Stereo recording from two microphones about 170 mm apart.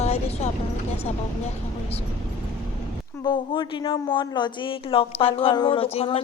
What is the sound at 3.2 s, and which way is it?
A man's voice, 25° left (ahead or behind).